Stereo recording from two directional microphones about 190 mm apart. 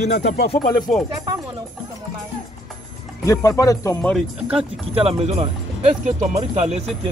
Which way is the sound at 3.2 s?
15° left (ahead or behind).